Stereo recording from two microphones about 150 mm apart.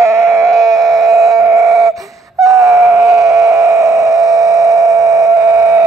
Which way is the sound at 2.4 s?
20° right (ahead or behind).